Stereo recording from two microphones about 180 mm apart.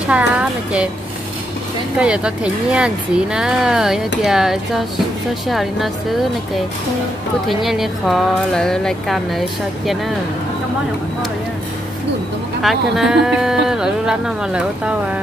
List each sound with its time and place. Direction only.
0.1 s speech: 5° right (ahead or behind)
2.0 s speech: 5° right (ahead or behind)
12.6 s speech: centre (ahead or behind)